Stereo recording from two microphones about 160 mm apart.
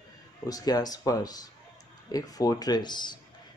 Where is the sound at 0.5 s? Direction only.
25° left (ahead or behind).